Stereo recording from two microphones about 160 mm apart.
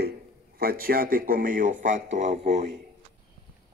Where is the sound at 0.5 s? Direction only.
70° right (ahead or behind); by 2.5 s 45° right (ahead or behind).